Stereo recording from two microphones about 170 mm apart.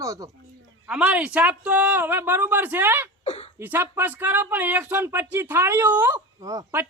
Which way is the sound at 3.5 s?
10° right (ahead or behind).